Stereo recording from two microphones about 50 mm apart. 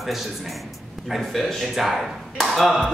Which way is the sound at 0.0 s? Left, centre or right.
Centre.